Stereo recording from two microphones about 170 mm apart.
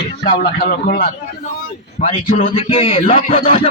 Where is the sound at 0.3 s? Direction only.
70° left (ahead or behind).